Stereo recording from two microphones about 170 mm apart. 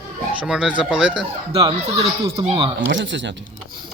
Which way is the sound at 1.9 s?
20° right (ahead or behind).